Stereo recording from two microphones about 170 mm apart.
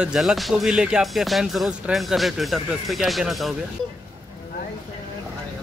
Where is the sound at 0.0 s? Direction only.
5° right (ahead or behind).